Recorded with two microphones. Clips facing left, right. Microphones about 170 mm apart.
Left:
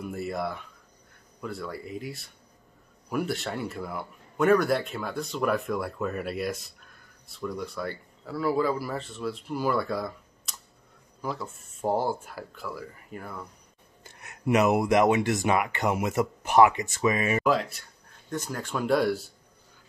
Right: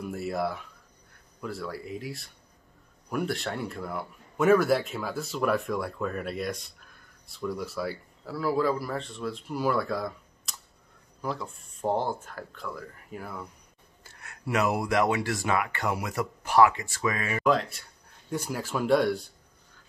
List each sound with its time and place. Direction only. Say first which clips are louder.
0.0 s speech: right 1 dB; centre (ahead or behind)
14.0 s speech: left 8 dB; 20° left (ahead or behind)
17.5 s speech: right 5 dB; centre (ahead or behind)
18.3 s speech: right 1 dB; 10° right (ahead or behind)